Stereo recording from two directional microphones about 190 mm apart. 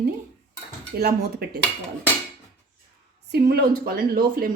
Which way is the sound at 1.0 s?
55° right (ahead or behind).